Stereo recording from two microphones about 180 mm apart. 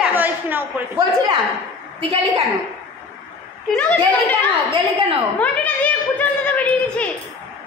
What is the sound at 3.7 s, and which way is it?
Speech, 5° left (ahead or behind).